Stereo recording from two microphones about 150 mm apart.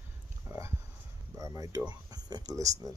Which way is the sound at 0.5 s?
15° right (ahead or behind).